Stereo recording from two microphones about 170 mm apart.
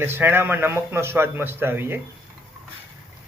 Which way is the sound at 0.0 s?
10° right (ahead or behind).